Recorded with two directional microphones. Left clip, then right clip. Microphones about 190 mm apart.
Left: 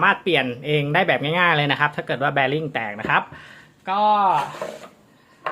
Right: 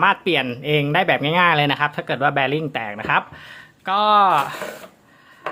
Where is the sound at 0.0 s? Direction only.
15° right (ahead or behind).